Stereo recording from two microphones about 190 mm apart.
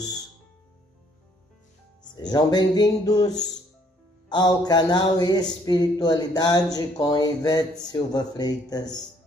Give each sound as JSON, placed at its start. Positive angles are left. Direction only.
{"t": 2.2, "sound": "speech", "side_deg": 20}